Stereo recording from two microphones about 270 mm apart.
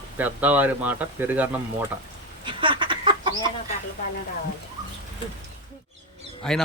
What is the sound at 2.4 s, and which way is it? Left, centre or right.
Chicken, centre.